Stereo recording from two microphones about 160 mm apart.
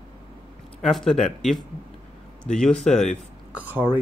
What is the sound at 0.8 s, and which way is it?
Speech, centre (ahead or behind).